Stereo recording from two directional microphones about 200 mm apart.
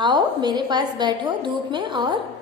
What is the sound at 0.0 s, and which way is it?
A woman's voice, 20° right (ahead or behind).